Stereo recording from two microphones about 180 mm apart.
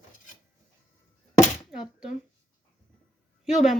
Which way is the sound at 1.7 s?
5° right (ahead or behind).